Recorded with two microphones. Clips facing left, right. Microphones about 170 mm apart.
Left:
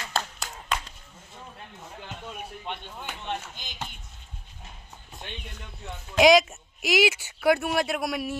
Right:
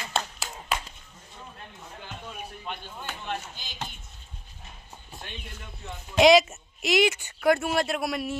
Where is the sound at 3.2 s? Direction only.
20° left (ahead or behind).